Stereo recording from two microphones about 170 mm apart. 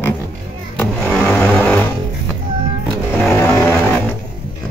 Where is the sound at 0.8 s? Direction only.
10° left (ahead or behind).